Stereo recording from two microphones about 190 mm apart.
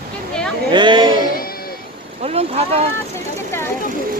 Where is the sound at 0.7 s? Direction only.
25° right (ahead or behind).